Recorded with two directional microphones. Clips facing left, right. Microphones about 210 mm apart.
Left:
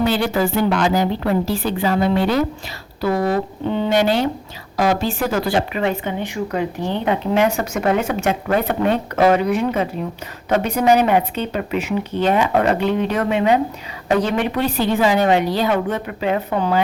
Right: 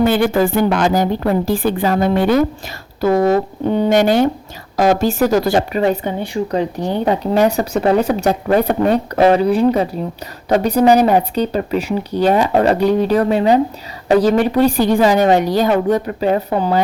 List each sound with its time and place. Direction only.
0.0 s a woman's voice: 50° right (ahead or behind); by 16.8 s 35° right (ahead or behind)